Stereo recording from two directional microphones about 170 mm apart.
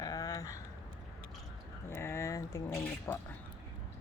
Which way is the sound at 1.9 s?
15° left (ahead or behind).